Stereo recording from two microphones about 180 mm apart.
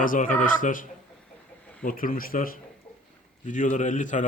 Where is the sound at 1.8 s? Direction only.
50° left (ahead or behind).